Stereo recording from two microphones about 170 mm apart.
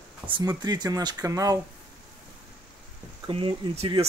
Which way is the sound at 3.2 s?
30° right (ahead or behind).